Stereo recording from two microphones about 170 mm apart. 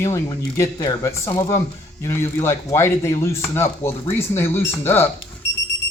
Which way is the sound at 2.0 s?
15° left (ahead or behind).